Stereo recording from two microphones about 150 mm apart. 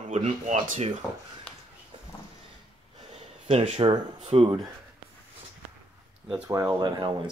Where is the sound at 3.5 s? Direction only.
45° right (ahead or behind).